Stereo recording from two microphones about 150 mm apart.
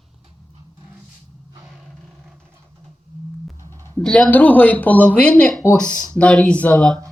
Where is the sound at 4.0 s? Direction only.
5° left (ahead or behind).